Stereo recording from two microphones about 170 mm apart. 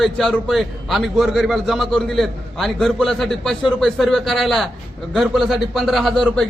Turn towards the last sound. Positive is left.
turn(degrees=0)  # may be behind; listen again after turning